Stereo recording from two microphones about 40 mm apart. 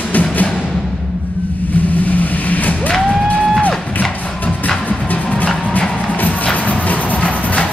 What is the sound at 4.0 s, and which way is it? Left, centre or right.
Music, left.